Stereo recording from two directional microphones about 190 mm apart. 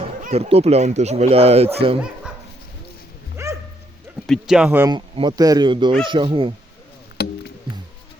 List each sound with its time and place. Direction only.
0.2 s speech: 35° right (ahead or behind)
3.4 s dog: 15° right (ahead or behind)
4.3 s speech: 5° right (ahead or behind)
4.9 s speech: 25° right (ahead or behind)
7.2 s music: 60° left (ahead or behind)